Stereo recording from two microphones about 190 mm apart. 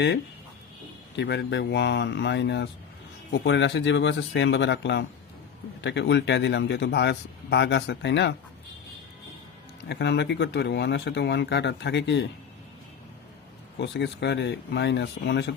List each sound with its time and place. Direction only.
1.1 s speech: 65° left (ahead or behind)
9.9 s speech: 65° left (ahead or behind)
13.7 s speech: 65° left (ahead or behind)